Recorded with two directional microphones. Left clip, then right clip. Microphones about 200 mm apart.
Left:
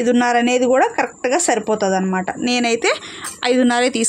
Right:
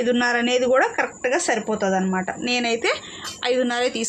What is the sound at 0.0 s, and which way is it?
Speech, 45° left (ahead or behind).